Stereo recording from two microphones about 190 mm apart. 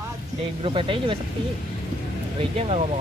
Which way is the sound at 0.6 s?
30° right (ahead or behind).